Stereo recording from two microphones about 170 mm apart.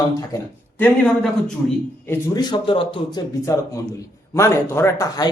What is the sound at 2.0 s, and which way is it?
A man's voice, 25° left (ahead or behind).